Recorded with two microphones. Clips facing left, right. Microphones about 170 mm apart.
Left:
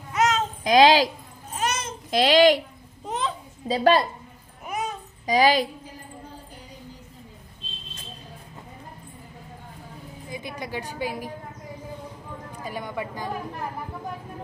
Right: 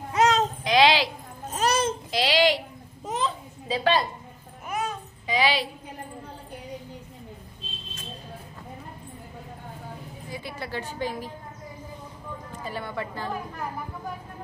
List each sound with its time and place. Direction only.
0.1 s a sound: 35° right (ahead or behind)
0.7 s a sound: 45° left (ahead or behind)
1.5 s babbling: 35° right (ahead or behind)
2.0 s speech: 50° left (ahead or behind)
3.1 s a sound: centre (ahead or behind)
3.6 s a woman's voice: 40° left (ahead or behind)
5.2 s a woman's voice: 45° left (ahead or behind)
10.3 s a woman's voice: 15° left (ahead or behind)
12.6 s speech: 15° left (ahead or behind)